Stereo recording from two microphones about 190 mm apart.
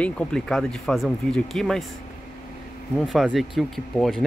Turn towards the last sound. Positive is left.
turn(degrees=0)  # may be behind; listen again after turning